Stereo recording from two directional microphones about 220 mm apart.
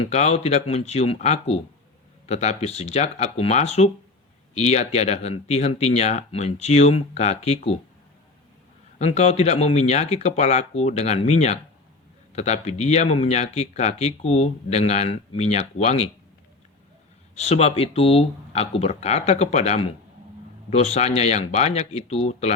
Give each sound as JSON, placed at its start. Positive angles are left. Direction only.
{"t": 0.0, "sound": "speech", "side_deg": 30}
{"t": 9.0, "sound": "speech", "side_deg": 30}
{"t": 17.3, "sound": "speech", "side_deg": 30}